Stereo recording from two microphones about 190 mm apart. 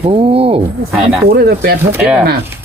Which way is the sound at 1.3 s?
55° right (ahead or behind).